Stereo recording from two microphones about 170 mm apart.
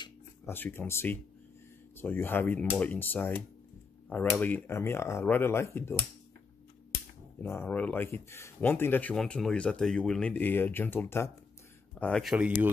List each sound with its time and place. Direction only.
0.5 s speech: 10° left (ahead or behind)
7.4 s speech: 10° left (ahead or behind); by 12.6 s 5° right (ahead or behind)